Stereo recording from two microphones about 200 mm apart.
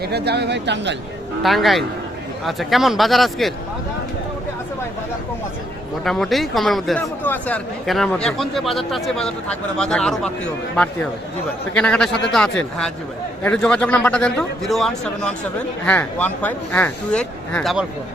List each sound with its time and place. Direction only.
0.0 s speech: 55° right (ahead or behind)
1.4 s a man's voice: centre (ahead or behind)
6.1 s a man's voice: centre (ahead or behind)